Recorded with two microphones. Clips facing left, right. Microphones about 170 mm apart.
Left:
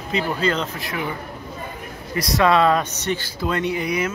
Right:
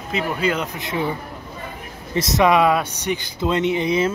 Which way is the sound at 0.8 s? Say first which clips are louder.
Right 4 dB; 25° right (ahead or behind).